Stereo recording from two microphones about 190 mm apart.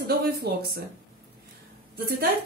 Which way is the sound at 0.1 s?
55° right (ahead or behind).